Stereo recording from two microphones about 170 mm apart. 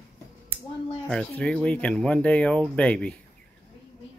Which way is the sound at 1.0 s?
5° left (ahead or behind).